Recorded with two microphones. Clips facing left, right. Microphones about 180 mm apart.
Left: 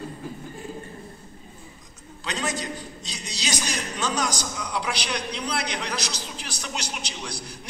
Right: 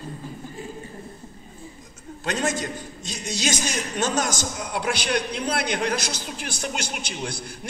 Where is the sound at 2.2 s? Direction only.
50° right (ahead or behind).